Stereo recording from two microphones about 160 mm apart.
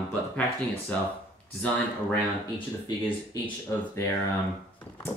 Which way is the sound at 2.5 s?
25° left (ahead or behind).